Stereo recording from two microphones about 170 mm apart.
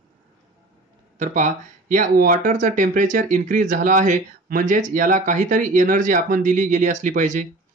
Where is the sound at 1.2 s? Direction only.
45° right (ahead or behind).